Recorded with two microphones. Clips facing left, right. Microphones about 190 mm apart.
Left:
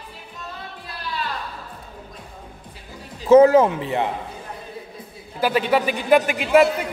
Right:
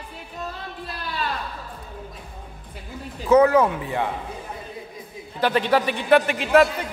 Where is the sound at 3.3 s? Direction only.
25° left (ahead or behind).